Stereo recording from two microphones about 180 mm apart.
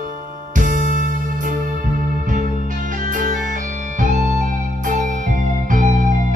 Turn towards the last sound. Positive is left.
turn(degrees=-45)  # may be behind; listen again after turning